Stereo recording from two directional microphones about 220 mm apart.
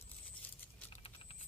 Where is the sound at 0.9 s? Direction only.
25° left (ahead or behind).